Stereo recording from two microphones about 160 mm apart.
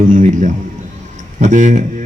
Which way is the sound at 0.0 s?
55° right (ahead or behind).